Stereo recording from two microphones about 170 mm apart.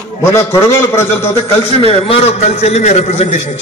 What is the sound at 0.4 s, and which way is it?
Speech, 15° left (ahead or behind).